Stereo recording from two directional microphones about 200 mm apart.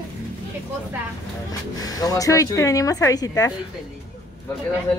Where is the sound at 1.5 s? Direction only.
20° left (ahead or behind).